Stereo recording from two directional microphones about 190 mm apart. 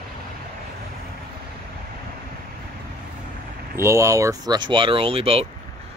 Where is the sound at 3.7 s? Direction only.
15° right (ahead or behind); by 5.5 s 30° right (ahead or behind).